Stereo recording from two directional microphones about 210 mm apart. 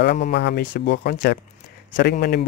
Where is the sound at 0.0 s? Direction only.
50° left (ahead or behind).